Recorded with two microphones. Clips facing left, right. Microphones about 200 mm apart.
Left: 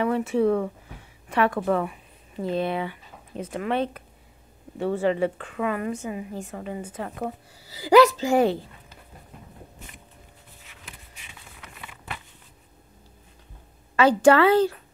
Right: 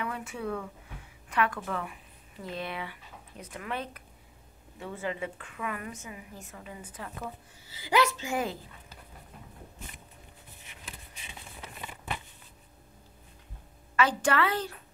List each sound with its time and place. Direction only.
0.0 s a woman's voice: 30° left (ahead or behind)
3.3 s speech: 90° left
3.7 s a woman's voice: 25° left (ahead or behind)
4.7 s speech: 70° left (ahead or behind)
5.6 s a woman's voice: 30° left (ahead or behind)
7.0 s a woman's voice: 50° left (ahead or behind)
13.9 s a woman's voice: 30° left (ahead or behind)